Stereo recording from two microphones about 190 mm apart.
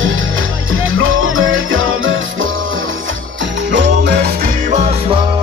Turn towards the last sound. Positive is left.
turn(degrees=-35)  # may be behind; listen again after turning